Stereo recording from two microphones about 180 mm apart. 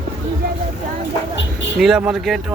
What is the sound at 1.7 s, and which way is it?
Speech, 5° right (ahead or behind).